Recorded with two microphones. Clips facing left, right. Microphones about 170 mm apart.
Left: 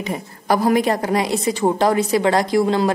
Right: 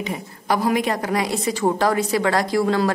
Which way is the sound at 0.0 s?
40° left (ahead or behind).